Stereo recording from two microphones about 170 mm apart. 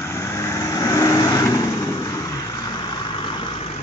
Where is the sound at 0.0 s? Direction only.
15° left (ahead or behind).